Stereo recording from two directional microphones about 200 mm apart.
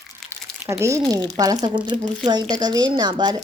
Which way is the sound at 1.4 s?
15° right (ahead or behind).